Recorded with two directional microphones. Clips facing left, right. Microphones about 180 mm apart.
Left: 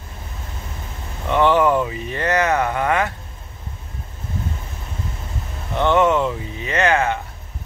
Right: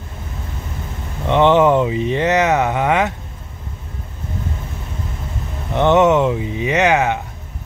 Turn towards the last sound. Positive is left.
turn(degrees=-15)  # may be behind; listen again after turning